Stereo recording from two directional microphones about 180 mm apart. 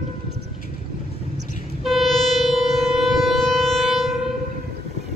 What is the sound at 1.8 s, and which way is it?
Civil defense siren, centre (ahead or behind).